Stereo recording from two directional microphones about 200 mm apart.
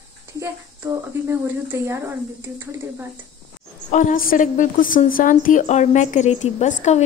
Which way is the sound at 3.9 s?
40° left (ahead or behind).